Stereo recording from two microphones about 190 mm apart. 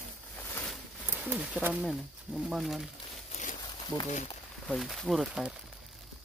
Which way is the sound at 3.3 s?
40° left (ahead or behind).